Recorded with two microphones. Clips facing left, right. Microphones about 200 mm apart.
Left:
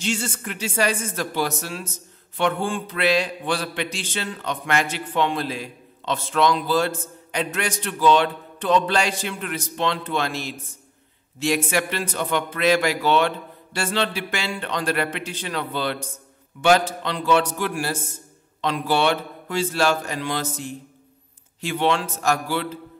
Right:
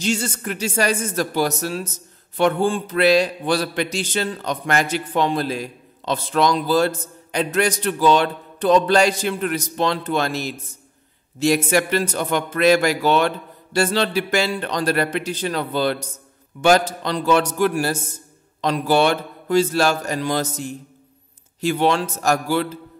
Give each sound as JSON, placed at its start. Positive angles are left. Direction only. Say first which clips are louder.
{"t": 0.0, "sound": "speech", "louder": "right 4 dB", "side_deg": -40}